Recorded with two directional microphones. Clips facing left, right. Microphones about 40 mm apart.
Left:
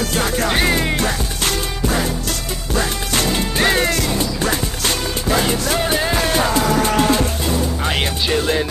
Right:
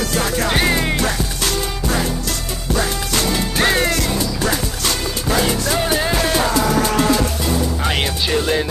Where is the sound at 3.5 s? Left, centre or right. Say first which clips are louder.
Even; centre.